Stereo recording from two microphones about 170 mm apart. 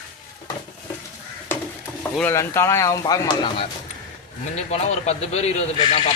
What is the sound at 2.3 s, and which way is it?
Speech, 15° left (ahead or behind).